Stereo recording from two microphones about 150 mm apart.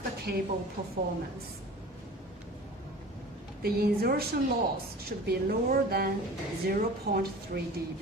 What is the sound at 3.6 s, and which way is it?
Speech, 90° right.